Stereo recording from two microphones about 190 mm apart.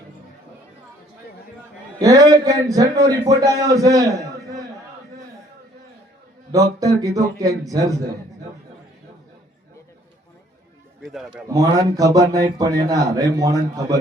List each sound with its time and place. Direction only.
2.0 s a man's voice: 20° right (ahead or behind)
6.5 s a man's voice: 20° right (ahead or behind)
11.0 s a man's voice: centre (ahead or behind)
11.4 s a man's voice: 20° right (ahead or behind)